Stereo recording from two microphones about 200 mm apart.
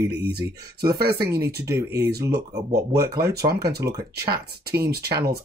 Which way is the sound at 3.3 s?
55° right (ahead or behind).